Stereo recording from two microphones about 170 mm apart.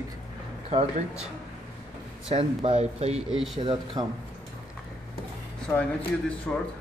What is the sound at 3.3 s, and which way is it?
Speech, 5° right (ahead or behind).